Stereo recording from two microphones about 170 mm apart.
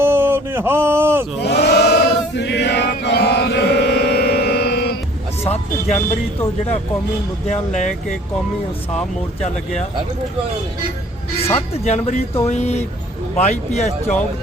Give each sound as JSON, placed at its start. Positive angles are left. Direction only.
{"t": 0.0, "sound": "speech", "side_deg": -15}
{"t": 1.4, "sound": "chant", "side_deg": 75}
{"t": 7.4, "sound": "speech", "side_deg": 40}
{"t": 11.9, "sound": "speech", "side_deg": 40}